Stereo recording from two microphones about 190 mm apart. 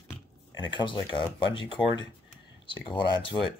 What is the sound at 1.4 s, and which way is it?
Speech, 80° left.